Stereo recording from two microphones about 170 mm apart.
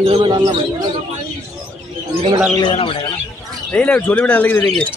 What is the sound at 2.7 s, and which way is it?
Speech, 35° left (ahead or behind).